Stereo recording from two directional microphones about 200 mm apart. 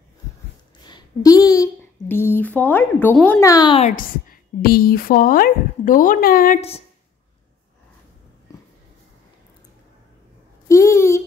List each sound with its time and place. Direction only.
0.8 s speech: 20° left (ahead or behind)
3.8 s a woman's voice: 45° left (ahead or behind)
10.7 s a sound: 15° left (ahead or behind)